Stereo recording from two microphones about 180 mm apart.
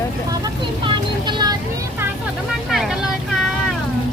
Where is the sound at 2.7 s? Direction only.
Centre (ahead or behind).